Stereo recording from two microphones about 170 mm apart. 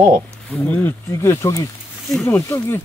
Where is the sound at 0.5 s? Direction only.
10° left (ahead or behind).